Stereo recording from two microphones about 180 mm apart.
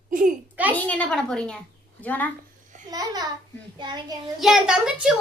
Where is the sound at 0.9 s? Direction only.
5° left (ahead or behind).